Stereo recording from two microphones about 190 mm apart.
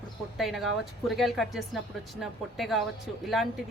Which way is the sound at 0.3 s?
Centre (ahead or behind).